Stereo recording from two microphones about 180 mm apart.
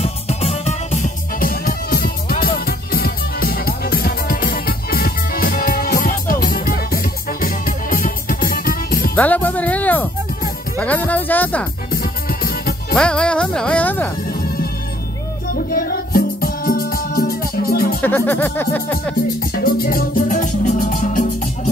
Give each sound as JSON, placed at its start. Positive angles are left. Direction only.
{"t": 0.0, "sound": "music", "side_deg": 35}
{"t": 9.1, "sound": "music", "side_deg": 10}
{"t": 11.9, "sound": "music", "side_deg": 55}
{"t": 12.9, "sound": "speech", "side_deg": 5}
{"t": 15.5, "sound": "music", "side_deg": 55}
{"t": 18.0, "sound": "music", "side_deg": 10}
{"t": 19.2, "sound": "music", "side_deg": 55}